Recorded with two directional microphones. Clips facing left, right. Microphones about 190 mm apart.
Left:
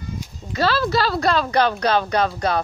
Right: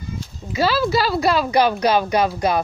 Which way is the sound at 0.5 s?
5° right (ahead or behind).